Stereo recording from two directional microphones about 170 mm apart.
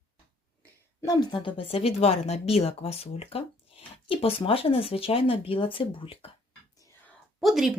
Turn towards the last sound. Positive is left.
turn(degrees=0)  # may be behind; listen again after turning